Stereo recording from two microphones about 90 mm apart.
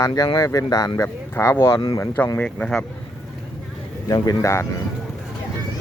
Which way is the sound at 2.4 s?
10° left (ahead or behind).